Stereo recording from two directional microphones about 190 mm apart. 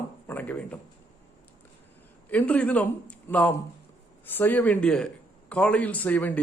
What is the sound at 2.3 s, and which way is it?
Speech, 5° left (ahead or behind).